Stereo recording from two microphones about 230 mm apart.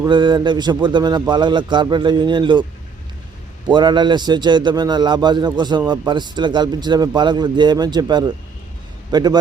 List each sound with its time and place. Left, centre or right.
0.0 s a man's voice: centre
3.7 s a man's voice: centre